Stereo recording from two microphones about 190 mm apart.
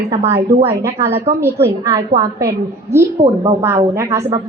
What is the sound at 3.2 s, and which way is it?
Speech, 35° right (ahead or behind).